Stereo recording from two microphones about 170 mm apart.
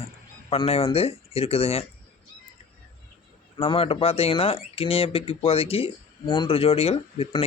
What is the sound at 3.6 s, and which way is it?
Speech, 35° left (ahead or behind).